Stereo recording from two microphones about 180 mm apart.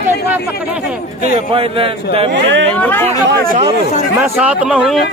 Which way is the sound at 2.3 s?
85° right.